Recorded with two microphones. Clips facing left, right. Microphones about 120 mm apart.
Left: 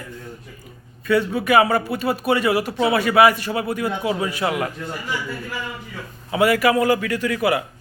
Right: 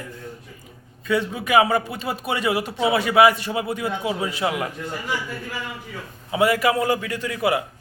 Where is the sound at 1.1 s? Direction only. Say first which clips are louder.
Left 4 dB; 20° right (ahead or behind).